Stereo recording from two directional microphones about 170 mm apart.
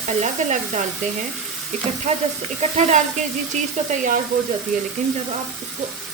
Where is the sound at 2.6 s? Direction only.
40° right (ahead or behind).